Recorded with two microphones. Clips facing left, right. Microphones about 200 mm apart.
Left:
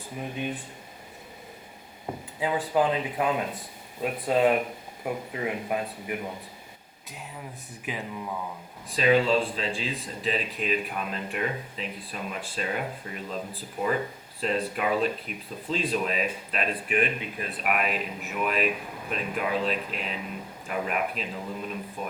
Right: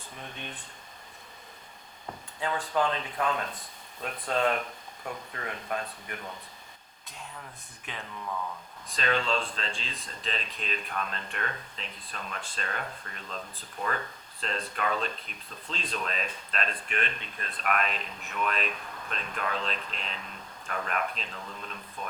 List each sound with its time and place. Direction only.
0.2 s speech: 10° left (ahead or behind)
2.4 s speech: 5° left (ahead or behind)
8.9 s speech: 5° left (ahead or behind)